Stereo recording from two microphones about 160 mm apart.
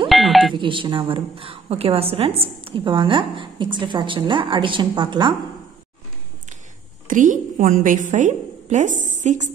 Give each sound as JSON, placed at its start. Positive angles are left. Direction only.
{"t": 0.1, "sound": "a sound", "side_deg": 0}
{"t": 0.6, "sound": "a woman's voice", "side_deg": -30}
{"t": 7.1, "sound": "a woman's voice", "side_deg": -55}